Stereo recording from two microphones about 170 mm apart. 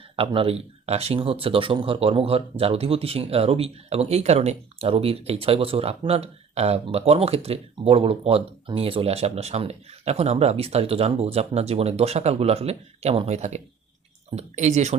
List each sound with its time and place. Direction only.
0.2 s speech: 35° right (ahead or behind)